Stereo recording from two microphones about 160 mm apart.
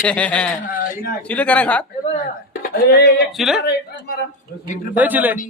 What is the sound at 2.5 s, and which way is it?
Speech, 80° left.